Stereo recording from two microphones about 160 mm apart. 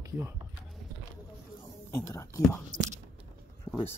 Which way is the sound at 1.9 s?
20° left (ahead or behind).